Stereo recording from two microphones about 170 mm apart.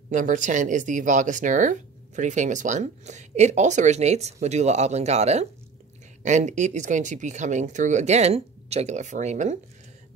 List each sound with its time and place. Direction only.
0.1 s speech: 50° right (ahead or behind)